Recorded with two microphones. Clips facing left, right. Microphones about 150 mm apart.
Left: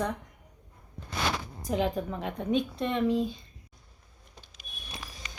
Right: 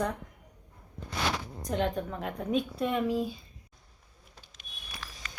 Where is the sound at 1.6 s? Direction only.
Centre (ahead or behind).